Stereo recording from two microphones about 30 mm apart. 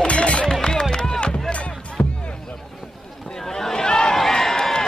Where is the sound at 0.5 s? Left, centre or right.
Left.